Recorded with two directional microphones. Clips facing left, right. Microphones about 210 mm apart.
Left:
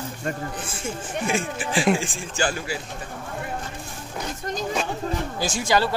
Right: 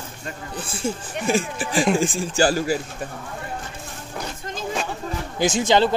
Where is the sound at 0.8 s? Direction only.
35° right (ahead or behind).